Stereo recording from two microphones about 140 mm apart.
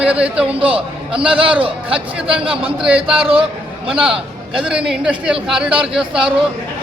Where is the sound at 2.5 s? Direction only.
5° right (ahead or behind).